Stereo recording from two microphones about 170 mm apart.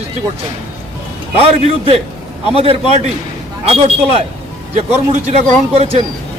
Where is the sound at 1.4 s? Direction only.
35° right (ahead or behind).